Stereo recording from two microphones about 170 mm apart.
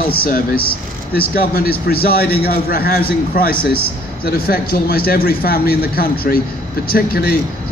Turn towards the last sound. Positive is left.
turn(degrees=65)  # may be behind; listen again after turning